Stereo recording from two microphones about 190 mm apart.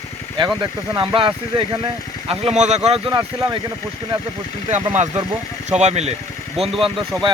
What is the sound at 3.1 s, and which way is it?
Speech, 20° right (ahead or behind).